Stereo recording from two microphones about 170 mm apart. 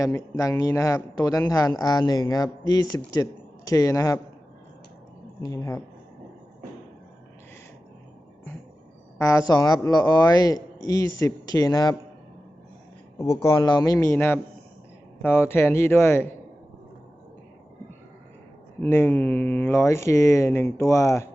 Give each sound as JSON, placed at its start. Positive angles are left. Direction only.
{"t": 0.0, "sound": "a man's voice", "side_deg": 20}
{"t": 5.4, "sound": "a man's voice", "side_deg": 20}
{"t": 9.1, "sound": "a man's voice", "side_deg": 20}
{"t": 13.4, "sound": "speech", "side_deg": 15}
{"t": 18.8, "sound": "speech", "side_deg": 15}